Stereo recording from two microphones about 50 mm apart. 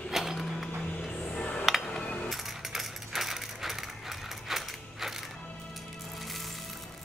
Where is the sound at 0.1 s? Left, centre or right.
Centre.